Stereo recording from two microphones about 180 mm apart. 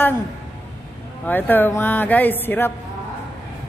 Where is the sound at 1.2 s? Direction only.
10° left (ahead or behind).